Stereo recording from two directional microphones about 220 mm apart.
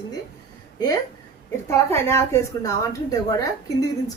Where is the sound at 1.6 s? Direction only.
10° left (ahead or behind).